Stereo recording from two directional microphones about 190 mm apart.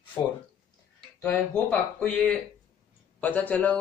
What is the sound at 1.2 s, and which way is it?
A man's voice, 10° left (ahead or behind).